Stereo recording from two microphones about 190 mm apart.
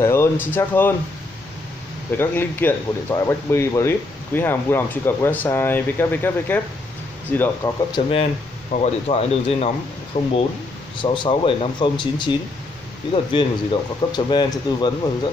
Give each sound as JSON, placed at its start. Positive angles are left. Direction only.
{"t": 0.0, "sound": "speech", "side_deg": 15}
{"t": 2.1, "sound": "speech", "side_deg": 10}
{"t": 7.9, "sound": "speech", "side_deg": 30}
{"t": 11.0, "sound": "speech", "side_deg": 25}